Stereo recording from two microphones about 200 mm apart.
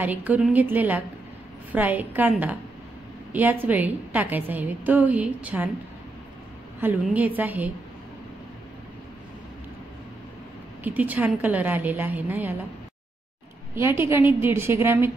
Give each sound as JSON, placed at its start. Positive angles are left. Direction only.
{"t": 0.0, "sound": "a woman's voice", "side_deg": -10}
{"t": 6.8, "sound": "a woman's voice", "side_deg": -10}
{"t": 10.8, "sound": "a woman's voice", "side_deg": -10}
{"t": 13.7, "sound": "a woman's voice", "side_deg": -10}